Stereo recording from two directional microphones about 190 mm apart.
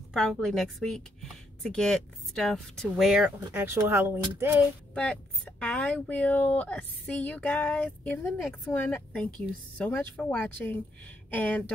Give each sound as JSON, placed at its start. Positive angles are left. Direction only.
{"t": 0.1, "sound": "speech", "side_deg": 0}
{"t": 4.9, "sound": "speech", "side_deg": 5}